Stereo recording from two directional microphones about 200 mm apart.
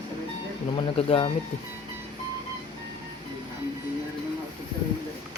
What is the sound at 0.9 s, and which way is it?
Speech, 30° left (ahead or behind).